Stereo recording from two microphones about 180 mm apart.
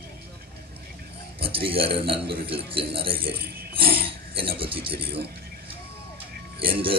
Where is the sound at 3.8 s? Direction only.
30° right (ahead or behind).